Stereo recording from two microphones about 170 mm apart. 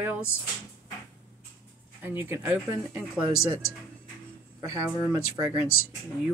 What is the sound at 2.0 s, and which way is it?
Speech, 15° right (ahead or behind).